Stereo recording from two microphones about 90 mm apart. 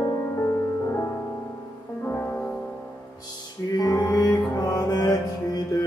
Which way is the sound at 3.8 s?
40° left (ahead or behind).